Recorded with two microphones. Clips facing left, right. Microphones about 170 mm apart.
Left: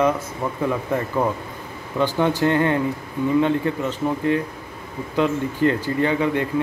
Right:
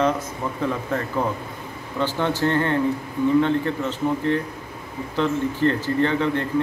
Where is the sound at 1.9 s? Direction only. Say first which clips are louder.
Left 3 dB; 15° left (ahead or behind).